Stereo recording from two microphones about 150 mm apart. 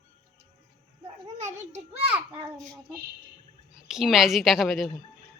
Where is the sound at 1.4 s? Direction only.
50° right (ahead or behind).